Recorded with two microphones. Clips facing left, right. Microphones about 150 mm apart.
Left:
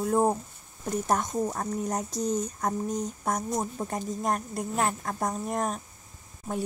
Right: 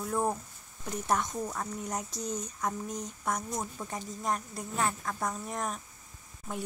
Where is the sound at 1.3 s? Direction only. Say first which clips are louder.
Left 6 dB; 30° left (ahead or behind).